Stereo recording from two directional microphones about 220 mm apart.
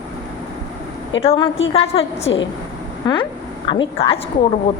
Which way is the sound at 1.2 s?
25° left (ahead or behind).